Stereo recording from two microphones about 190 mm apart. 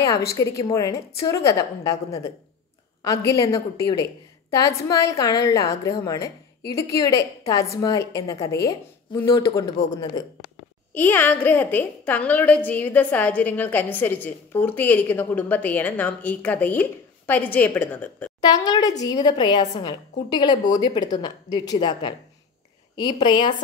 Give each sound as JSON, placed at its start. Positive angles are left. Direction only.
{"t": 0.3, "sound": "a woman's voice", "side_deg": 15}
{"t": 10.9, "sound": "a woman's voice", "side_deg": 10}
{"t": 18.4, "sound": "speech", "side_deg": 20}
{"t": 23.2, "sound": "speech", "side_deg": 25}